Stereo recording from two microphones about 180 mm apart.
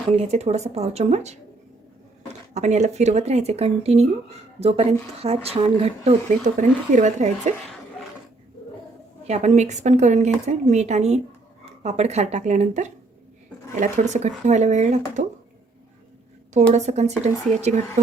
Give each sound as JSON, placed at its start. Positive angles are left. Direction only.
{"t": 0.2, "sound": "speech", "side_deg": -35}
{"t": 9.2, "sound": "speech", "side_deg": -40}
{"t": 16.7, "sound": "speech", "side_deg": -40}